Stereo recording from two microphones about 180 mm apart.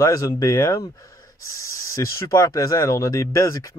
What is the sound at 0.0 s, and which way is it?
Speech, 20° left (ahead or behind).